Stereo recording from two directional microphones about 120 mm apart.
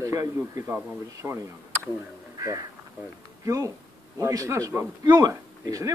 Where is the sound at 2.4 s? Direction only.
30° right (ahead or behind).